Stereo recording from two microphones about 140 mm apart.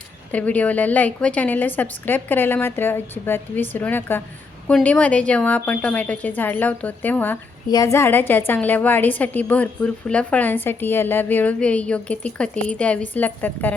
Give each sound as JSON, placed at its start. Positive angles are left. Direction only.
{"t": 0.3, "sound": "a woman's voice", "side_deg": 10}
{"t": 7.7, "sound": "a woman's voice", "side_deg": 25}